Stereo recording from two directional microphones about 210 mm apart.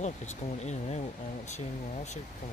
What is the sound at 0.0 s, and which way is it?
Speech, 35° left (ahead or behind).